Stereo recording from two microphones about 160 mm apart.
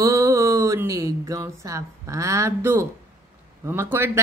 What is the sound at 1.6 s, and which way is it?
A woman's voice, 20° right (ahead or behind).